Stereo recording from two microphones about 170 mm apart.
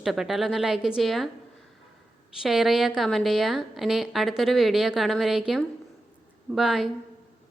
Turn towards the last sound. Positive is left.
turn(degrees=0)  # may be behind; listen again after turning